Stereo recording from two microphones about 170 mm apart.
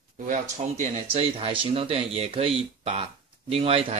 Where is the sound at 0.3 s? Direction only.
45° right (ahead or behind).